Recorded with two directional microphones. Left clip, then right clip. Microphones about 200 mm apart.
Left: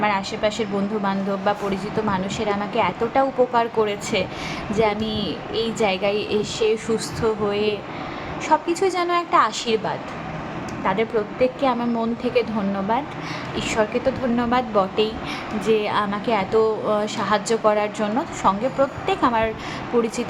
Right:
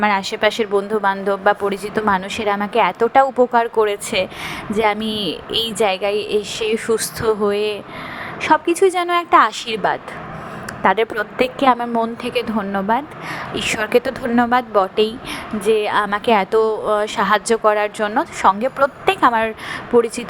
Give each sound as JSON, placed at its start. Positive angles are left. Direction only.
{"t": 0.0, "sound": "speech", "side_deg": -35}